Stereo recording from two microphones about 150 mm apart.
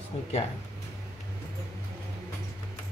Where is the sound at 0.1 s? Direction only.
40° left (ahead or behind).